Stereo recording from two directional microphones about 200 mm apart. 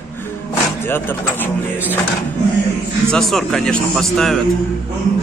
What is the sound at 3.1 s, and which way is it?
Speech, centre (ahead or behind).